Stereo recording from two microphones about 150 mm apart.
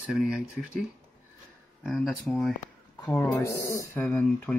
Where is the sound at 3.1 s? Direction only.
20° left (ahead or behind).